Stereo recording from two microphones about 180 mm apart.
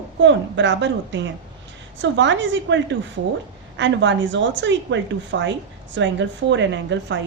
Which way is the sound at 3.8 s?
90° right.